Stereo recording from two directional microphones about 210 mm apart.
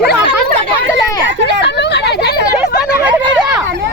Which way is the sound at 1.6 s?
55° left (ahead or behind).